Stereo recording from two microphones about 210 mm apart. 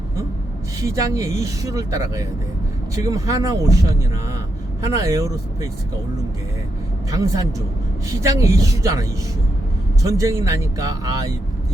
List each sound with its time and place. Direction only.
0.9 s speech: 15° right (ahead or behind)
7.1 s speech: 20° right (ahead or behind)